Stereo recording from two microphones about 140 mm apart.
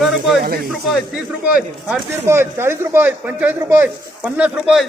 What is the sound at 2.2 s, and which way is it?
A man's voice, 15° right (ahead or behind).